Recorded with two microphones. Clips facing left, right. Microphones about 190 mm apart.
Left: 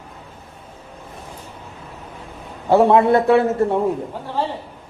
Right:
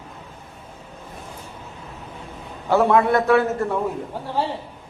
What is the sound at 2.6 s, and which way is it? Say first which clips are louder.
A man's voice: left 4 dB; 30° left (ahead or behind).